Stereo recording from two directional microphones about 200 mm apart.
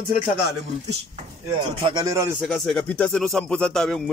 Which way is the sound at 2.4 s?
Centre (ahead or behind).